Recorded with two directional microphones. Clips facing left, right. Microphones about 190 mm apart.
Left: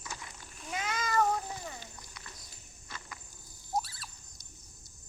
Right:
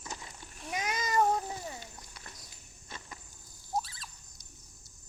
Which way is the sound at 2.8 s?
25° right (ahead or behind).